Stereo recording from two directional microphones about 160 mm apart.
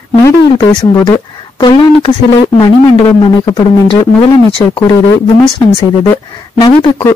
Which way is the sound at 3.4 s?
25° left (ahead or behind).